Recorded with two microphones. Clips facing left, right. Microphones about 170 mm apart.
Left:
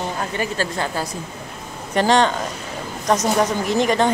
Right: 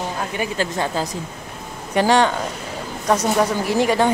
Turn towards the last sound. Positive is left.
turn(degrees=-10)  # may be behind; listen again after turning